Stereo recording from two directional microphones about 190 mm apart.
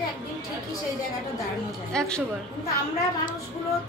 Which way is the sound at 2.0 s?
5° left (ahead or behind).